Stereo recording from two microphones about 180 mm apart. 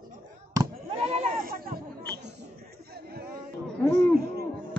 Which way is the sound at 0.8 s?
35° right (ahead or behind).